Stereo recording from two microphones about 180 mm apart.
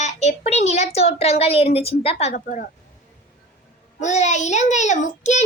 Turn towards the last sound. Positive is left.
turn(degrees=40)  # may be behind; listen again after turning